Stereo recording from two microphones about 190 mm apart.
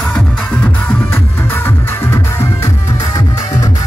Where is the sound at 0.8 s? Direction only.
10° left (ahead or behind).